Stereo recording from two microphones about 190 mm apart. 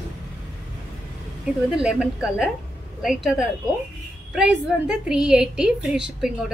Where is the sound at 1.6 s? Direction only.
Centre (ahead or behind).